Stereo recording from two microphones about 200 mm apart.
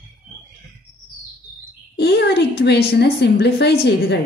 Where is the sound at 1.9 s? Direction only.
55° left (ahead or behind).